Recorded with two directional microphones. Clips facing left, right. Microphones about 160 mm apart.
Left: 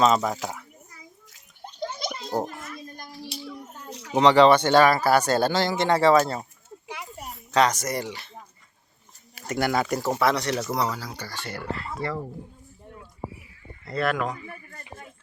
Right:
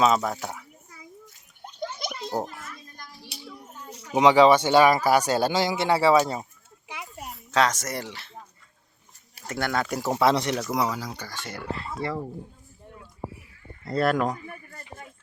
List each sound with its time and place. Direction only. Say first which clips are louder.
0.0 s speech: left 1 dB; 5° right (ahead or behind)
1.6 s a sound: left 2 dB; centre (ahead or behind)
3.8 s a sound: left 3 dB; 90° left
4.1 s speech: even; 10° right (ahead or behind)
6.8 s a sound: left 1 dB; 10° right (ahead or behind)
9.5 s speech: left 3 dB; 5° left (ahead or behind)
9.9 s speech: right 1 dB; 15° right (ahead or behind)
10.5 s speech: left 1 dB; centre (ahead or behind)
10.8 s speech: right 1 dB; 10° right (ahead or behind)
11.1 s speech: left 1 dB; 5° left (ahead or behind)
12.0 s speech: even; 20° right (ahead or behind)
13.8 s speech: right 3 dB; 40° right (ahead or behind)